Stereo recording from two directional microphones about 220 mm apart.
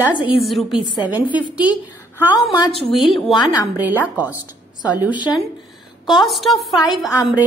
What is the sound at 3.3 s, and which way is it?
Speech, 20° left (ahead or behind).